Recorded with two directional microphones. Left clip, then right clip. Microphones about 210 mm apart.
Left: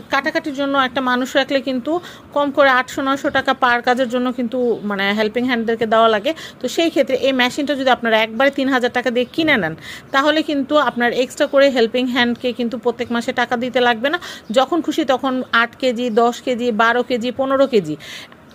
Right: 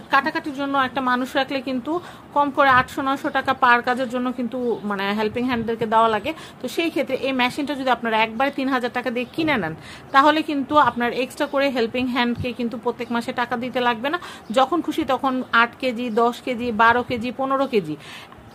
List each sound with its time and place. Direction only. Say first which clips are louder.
0.1 s a woman's voice: left 1 dB; 20° left (ahead or behind)